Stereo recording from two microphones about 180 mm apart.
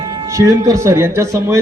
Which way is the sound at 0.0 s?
20° right (ahead or behind).